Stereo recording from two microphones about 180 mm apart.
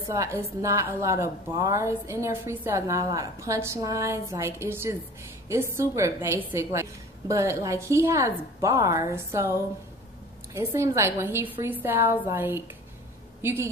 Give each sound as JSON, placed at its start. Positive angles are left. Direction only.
{"t": 0.1, "sound": "a woman's voice", "side_deg": -15}